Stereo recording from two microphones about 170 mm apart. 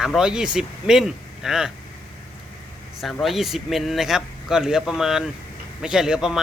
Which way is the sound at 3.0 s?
Centre (ahead or behind).